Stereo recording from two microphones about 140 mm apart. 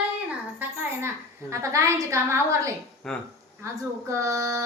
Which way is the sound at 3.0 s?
5° left (ahead or behind).